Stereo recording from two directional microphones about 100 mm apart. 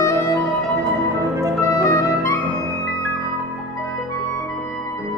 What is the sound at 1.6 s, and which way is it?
Music, 30° left (ahead or behind).